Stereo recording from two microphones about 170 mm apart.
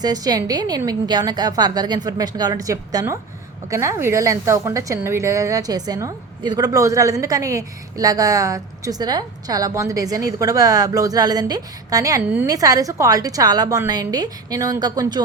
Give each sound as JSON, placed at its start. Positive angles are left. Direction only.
{"t": 0.0, "sound": "a woman's voice", "side_deg": -25}